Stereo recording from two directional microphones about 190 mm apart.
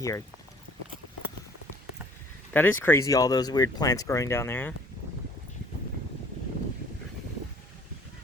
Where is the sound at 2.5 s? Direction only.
10° left (ahead or behind).